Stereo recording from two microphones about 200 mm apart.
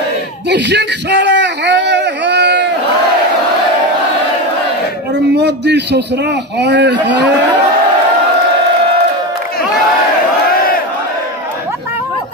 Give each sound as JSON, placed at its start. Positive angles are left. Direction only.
{"t": 0.5, "sound": "speech", "side_deg": -60}
{"t": 5.3, "sound": "speech", "side_deg": -55}